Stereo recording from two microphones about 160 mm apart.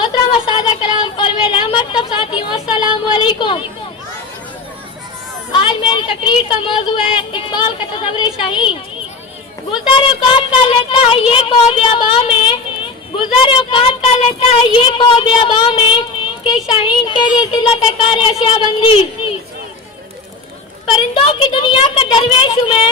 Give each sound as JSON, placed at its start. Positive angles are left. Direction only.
{"t": 0.0, "sound": "a sound", "side_deg": 30}
{"t": 2.7, "sound": "speech", "side_deg": 30}
{"t": 5.5, "sound": "speech", "side_deg": 30}
{"t": 9.7, "sound": "speech", "side_deg": 30}
{"t": 20.8, "sound": "speech", "side_deg": 30}